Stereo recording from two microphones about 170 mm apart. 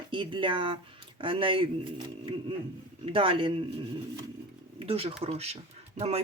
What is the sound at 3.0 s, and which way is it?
Speech, 30° right (ahead or behind).